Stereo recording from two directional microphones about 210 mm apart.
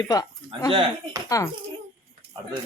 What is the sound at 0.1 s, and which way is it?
A woman's voice, 15° left (ahead or behind).